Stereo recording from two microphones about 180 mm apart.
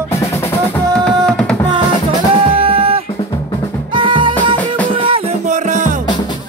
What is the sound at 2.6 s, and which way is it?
Music, 30° right (ahead or behind).